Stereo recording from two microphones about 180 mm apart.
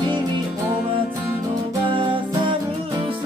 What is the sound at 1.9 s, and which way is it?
Music, 30° right (ahead or behind).